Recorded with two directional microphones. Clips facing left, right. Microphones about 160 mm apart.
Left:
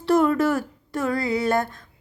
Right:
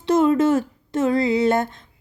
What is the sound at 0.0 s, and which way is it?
Speech, 20° right (ahead or behind).